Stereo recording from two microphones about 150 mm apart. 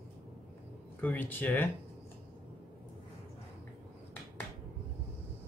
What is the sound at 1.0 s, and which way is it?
Speech, 10° left (ahead or behind).